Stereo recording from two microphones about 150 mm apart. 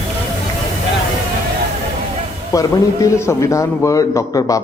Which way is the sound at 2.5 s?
20° left (ahead or behind).